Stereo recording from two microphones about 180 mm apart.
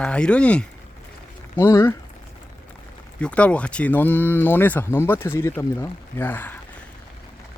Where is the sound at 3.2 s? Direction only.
5° left (ahead or behind).